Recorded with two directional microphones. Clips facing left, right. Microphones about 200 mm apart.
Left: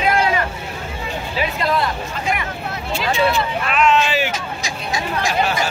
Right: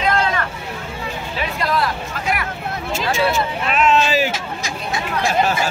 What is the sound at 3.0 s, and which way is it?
Vehicle, 45° right (ahead or behind).